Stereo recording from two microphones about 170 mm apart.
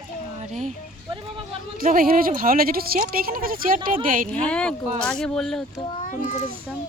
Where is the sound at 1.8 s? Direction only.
55° right (ahead or behind).